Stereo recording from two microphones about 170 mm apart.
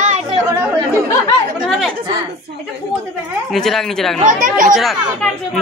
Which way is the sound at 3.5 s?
Centre (ahead or behind).